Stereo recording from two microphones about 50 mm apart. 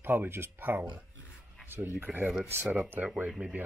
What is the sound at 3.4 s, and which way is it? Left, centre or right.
Speech, right.